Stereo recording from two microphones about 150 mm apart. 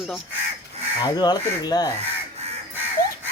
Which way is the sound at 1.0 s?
30° left (ahead or behind).